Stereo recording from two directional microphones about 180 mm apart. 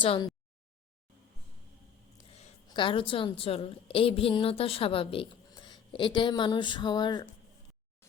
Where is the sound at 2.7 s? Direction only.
25° left (ahead or behind).